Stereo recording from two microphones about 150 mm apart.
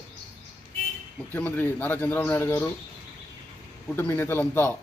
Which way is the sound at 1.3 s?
15° left (ahead or behind).